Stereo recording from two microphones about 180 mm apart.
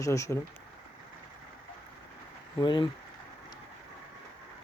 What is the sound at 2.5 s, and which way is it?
Speech, 25° left (ahead or behind).